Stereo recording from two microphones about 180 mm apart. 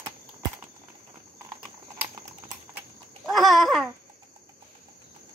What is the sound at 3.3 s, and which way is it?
Babbling, centre (ahead or behind).